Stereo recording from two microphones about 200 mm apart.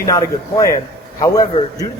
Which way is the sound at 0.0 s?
15° left (ahead or behind).